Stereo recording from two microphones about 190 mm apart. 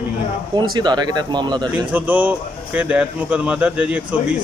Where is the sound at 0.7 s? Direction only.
20° right (ahead or behind).